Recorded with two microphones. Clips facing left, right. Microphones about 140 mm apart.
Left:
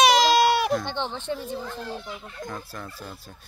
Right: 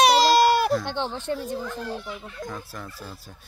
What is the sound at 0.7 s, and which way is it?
Speech, 5° right (ahead or behind).